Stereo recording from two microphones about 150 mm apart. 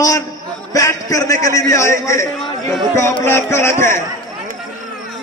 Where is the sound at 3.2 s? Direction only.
15° left (ahead or behind).